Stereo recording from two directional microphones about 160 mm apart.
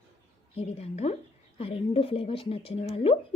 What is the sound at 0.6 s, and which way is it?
A woman's voice, 40° left (ahead or behind).